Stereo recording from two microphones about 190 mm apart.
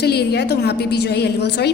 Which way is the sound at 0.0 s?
60° left (ahead or behind).